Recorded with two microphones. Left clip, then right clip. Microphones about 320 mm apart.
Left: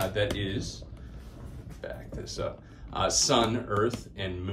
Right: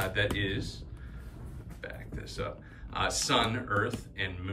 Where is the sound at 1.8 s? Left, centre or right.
Centre.